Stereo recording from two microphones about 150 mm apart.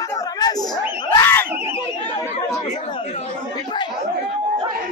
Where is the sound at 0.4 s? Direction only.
25° left (ahead or behind).